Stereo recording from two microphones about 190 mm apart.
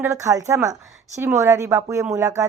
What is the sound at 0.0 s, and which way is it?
A woman's voice, 15° right (ahead or behind).